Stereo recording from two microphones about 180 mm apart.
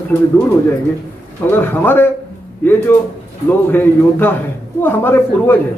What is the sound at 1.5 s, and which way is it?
Speech, 10° left (ahead or behind).